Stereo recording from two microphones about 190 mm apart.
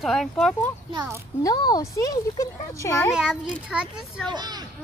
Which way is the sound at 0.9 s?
20° right (ahead or behind).